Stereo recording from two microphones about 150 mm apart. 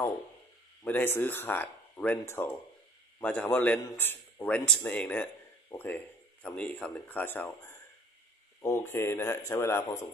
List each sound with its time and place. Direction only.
0.8 s a man's voice: 15° left (ahead or behind)
8.5 s a man's voice: 20° left (ahead or behind)